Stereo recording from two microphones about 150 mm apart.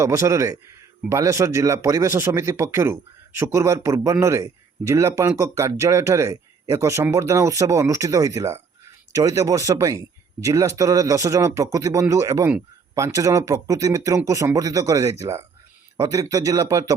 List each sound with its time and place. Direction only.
0.0 s speech: 20° right (ahead or behind)